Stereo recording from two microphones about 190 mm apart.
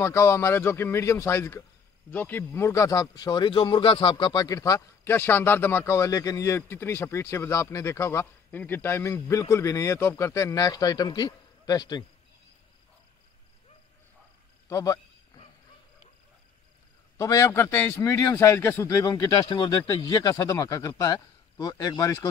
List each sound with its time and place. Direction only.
0.0 s speech: 15° left (ahead or behind)
14.7 s a man's voice: 15° left (ahead or behind)
17.2 s speech: 15° left (ahead or behind)